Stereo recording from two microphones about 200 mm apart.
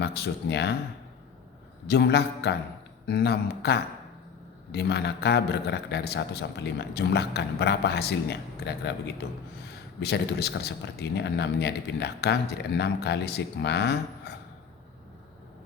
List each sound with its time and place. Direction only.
0.0 s speech: 55° left (ahead or behind)
1.9 s a man's voice: 55° left (ahead or behind)